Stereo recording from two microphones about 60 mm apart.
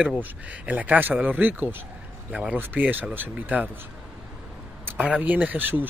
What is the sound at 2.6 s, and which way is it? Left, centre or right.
Speech, right.